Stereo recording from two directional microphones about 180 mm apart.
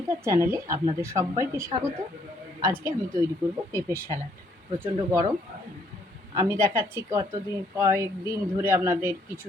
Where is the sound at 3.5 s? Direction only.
15° right (ahead or behind).